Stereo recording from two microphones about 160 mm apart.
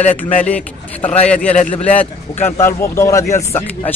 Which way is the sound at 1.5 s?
45° left (ahead or behind).